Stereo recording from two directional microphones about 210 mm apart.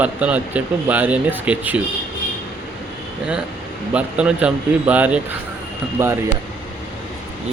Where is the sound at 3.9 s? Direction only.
5° right (ahead or behind).